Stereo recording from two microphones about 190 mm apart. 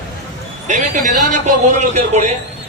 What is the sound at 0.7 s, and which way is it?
Speech, 40° right (ahead or behind).